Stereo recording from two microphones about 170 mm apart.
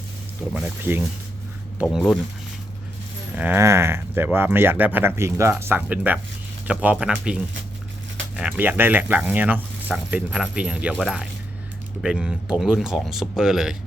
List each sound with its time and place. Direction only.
0.5 s speech: 10° right (ahead or behind)
1.8 s speech: centre (ahead or behind)
3.3 s speech: 10° right (ahead or behind)